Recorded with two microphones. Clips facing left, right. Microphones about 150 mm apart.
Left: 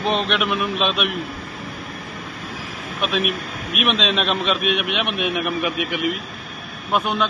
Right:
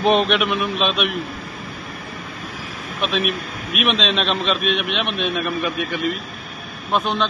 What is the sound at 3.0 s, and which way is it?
A man's voice, 5° left (ahead or behind).